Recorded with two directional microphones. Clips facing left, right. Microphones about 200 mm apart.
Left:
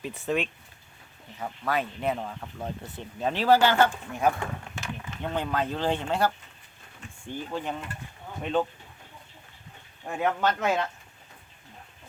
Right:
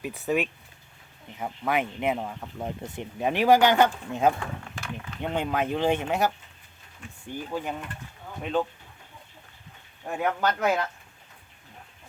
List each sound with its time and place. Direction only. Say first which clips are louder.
0.0 s speech: right 2 dB; 5° right (ahead or behind)
1.4 s speech: right 2 dB; 15° right (ahead or behind); by 8.6 s centre (ahead or behind)
10.1 s speech: even; centre (ahead or behind)